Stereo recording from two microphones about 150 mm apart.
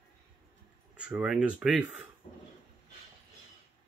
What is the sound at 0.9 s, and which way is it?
Speech, 5° right (ahead or behind).